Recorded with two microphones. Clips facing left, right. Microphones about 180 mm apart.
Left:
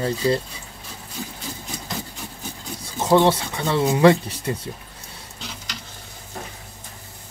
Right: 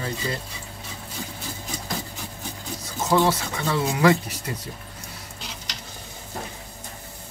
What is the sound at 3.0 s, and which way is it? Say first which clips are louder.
Speech: left 4 dB; 30° left (ahead or behind).